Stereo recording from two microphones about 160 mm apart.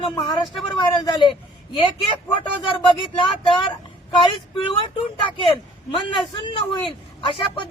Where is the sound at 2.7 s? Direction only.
30° left (ahead or behind).